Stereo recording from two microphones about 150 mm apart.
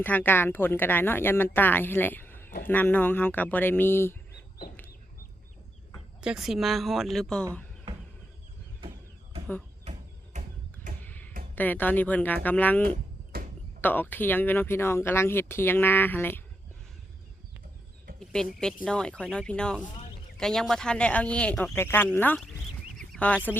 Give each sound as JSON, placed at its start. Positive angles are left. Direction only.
{"t": 0.0, "sound": "speech", "side_deg": 10}
{"t": 6.2, "sound": "a woman's voice", "side_deg": -5}
{"t": 10.3, "sound": "a sound", "side_deg": -55}
{"t": 11.0, "sound": "music", "side_deg": 10}
{"t": 11.5, "sound": "speech", "side_deg": 10}
{"t": 13.3, "sound": "a sound", "side_deg": -90}
{"t": 13.8, "sound": "speech", "side_deg": 10}
{"t": 18.2, "sound": "a woman's voice", "side_deg": 5}
{"t": 23.0, "sound": "a sound", "side_deg": 5}